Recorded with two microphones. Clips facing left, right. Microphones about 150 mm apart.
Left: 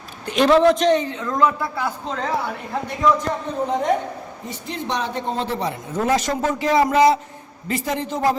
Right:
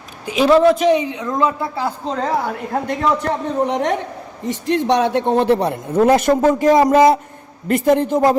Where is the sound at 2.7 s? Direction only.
65° right (ahead or behind).